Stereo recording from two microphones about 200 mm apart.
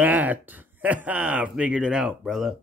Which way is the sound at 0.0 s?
10° right (ahead or behind).